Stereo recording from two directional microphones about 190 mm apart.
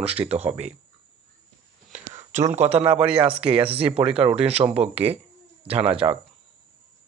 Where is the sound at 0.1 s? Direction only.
30° right (ahead or behind).